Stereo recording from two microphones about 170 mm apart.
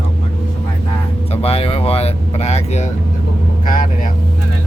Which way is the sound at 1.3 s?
35° left (ahead or behind).